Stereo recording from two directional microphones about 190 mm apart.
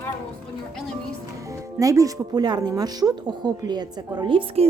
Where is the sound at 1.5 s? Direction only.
15° right (ahead or behind).